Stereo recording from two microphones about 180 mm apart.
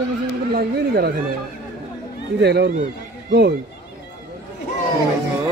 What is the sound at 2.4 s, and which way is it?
Speech, 65° right (ahead or behind).